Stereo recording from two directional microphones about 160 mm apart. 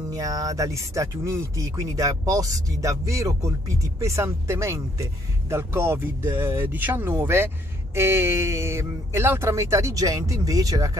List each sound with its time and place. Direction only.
0.1 s speech: 20° right (ahead or behind)